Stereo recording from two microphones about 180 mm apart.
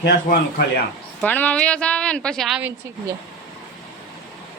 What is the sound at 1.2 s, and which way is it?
Speech, 10° left (ahead or behind).